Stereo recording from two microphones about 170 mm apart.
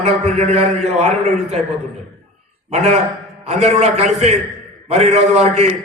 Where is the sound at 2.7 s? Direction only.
40° right (ahead or behind).